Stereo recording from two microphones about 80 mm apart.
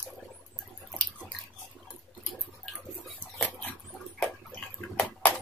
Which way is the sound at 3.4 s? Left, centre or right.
Centre.